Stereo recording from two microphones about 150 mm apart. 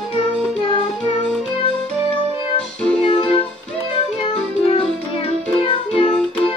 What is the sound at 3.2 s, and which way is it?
Music, 35° left (ahead or behind).